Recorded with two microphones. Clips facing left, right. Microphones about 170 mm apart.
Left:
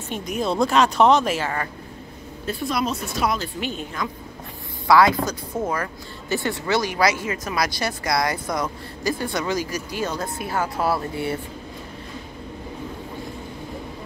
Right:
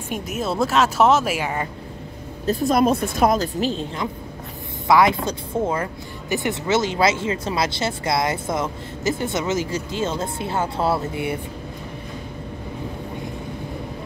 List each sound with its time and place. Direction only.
0.1 s speech: 5° right (ahead or behind)
2.4 s a woman's voice: 40° right (ahead or behind); by 11.3 s 20° right (ahead or behind)